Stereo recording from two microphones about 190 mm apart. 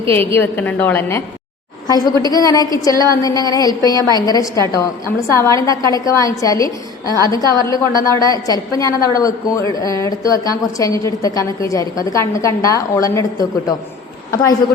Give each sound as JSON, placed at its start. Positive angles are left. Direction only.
{"t": 0.1, "sound": "a woman's voice", "side_deg": 10}